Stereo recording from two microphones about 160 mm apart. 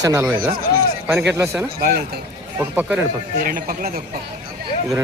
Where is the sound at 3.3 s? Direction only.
60° right (ahead or behind).